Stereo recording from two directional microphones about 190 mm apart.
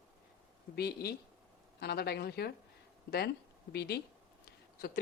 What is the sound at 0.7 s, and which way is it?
A woman's voice, 55° left (ahead or behind).